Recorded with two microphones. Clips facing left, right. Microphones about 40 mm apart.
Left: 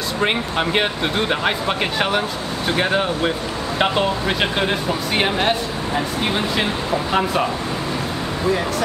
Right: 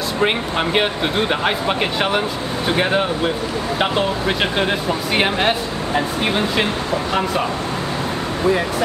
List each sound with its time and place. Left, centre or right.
0.2 s speech: centre
8.5 s speech: centre